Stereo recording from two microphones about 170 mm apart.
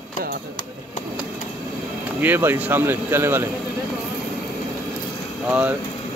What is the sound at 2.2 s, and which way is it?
Speech, 10° right (ahead or behind).